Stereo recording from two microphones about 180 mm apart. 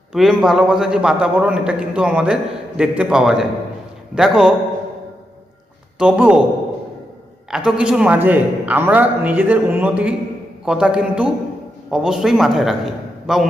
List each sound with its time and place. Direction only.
0.1 s a man's voice: centre (ahead or behind)
6.0 s a man's voice: 5° right (ahead or behind)
7.5 s a man's voice: 5° right (ahead or behind)